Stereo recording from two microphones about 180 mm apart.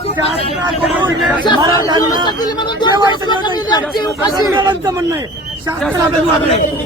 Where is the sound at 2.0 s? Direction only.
20° left (ahead or behind).